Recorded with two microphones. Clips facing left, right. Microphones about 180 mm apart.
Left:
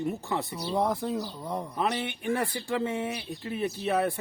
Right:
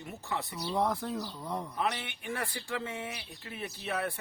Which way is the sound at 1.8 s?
30° left (ahead or behind).